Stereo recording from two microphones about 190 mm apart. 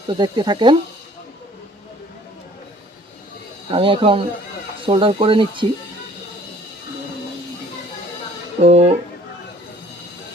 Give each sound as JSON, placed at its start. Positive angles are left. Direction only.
{"t": 0.1, "sound": "speech", "side_deg": -25}
{"t": 3.7, "sound": "speech", "side_deg": -25}
{"t": 8.6, "sound": "speech", "side_deg": -35}